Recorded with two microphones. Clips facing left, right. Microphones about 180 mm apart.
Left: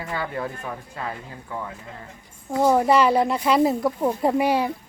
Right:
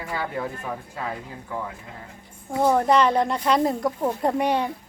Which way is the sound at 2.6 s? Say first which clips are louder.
Left 1 dB; 10° left (ahead or behind).